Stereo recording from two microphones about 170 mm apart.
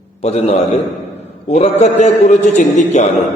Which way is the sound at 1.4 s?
40° left (ahead or behind).